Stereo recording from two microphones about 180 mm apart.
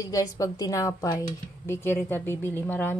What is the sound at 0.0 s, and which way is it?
A woman's voice, 20° left (ahead or behind).